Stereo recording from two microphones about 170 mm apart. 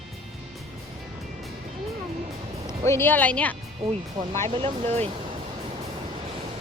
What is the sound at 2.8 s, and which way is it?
Speech, 15° left (ahead or behind).